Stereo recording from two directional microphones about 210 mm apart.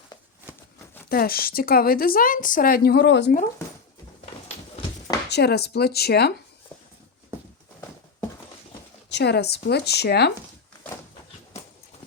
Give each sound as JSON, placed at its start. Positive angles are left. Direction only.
{"t": 1.1, "sound": "a woman's voice", "side_deg": 45}
{"t": 5.3, "sound": "a woman's voice", "side_deg": 50}
{"t": 9.0, "sound": "a woman's voice", "side_deg": 55}